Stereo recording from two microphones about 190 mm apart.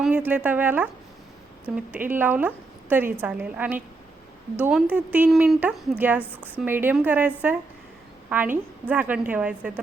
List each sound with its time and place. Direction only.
0.0 s a woman's voice: 10° right (ahead or behind)